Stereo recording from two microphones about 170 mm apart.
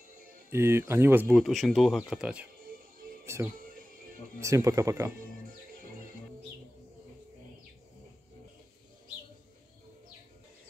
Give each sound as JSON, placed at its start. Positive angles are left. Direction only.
{"t": 0.5, "sound": "speech", "side_deg": -15}
{"t": 1.3, "sound": "speech", "side_deg": 0}
{"t": 3.5, "sound": "music", "side_deg": -55}
{"t": 4.4, "sound": "speech", "side_deg": -20}